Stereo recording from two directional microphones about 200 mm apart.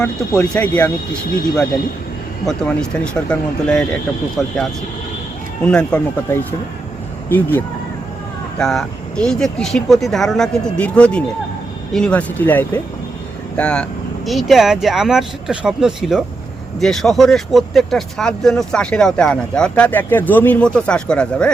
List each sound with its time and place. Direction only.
0.0 s speech: 5° left (ahead or behind)
2.5 s speech: 5° left (ahead or behind)